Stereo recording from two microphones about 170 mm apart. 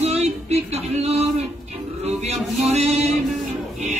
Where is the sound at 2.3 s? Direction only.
40° right (ahead or behind).